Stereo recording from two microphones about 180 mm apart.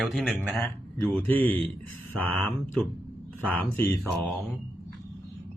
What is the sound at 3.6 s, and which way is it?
Speech, 10° left (ahead or behind).